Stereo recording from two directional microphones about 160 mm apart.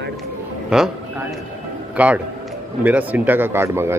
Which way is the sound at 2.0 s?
10° right (ahead or behind).